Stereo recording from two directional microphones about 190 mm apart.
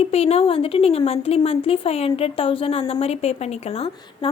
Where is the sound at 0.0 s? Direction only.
35° left (ahead or behind).